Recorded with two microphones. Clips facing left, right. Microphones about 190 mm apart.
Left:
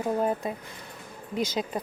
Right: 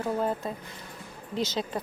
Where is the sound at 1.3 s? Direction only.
25° right (ahead or behind).